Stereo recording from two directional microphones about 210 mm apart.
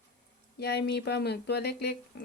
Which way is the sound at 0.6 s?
50° left (ahead or behind).